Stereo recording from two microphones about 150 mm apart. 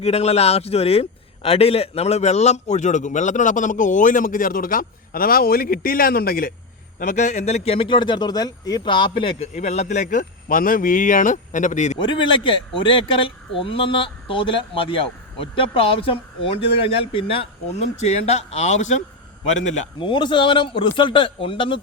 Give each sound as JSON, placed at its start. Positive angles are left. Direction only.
{"t": 0.0, "sound": "a man's voice", "side_deg": 45}
{"t": 7.0, "sound": "a man's voice", "side_deg": 55}
{"t": 11.9, "sound": "a man's voice", "side_deg": 35}
{"t": 20.0, "sound": "speech", "side_deg": 30}